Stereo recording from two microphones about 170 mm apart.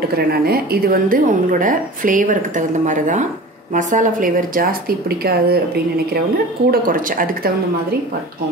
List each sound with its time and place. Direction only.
0.3 s a woman's voice: 65° right (ahead or behind)
6.7 s a woman's voice: 55° right (ahead or behind)